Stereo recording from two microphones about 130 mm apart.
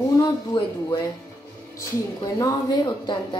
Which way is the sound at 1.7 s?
25° left (ahead or behind).